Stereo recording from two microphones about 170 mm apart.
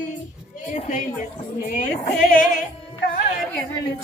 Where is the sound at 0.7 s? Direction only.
40° left (ahead or behind).